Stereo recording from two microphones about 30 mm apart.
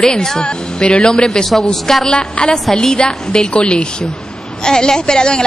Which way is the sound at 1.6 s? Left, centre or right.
Centre.